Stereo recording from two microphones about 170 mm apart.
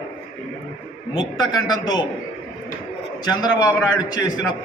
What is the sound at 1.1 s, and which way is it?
Speech, 25° left (ahead or behind).